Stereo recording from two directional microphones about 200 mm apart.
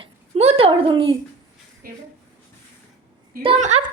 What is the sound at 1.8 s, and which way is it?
Speech, 45° right (ahead or behind).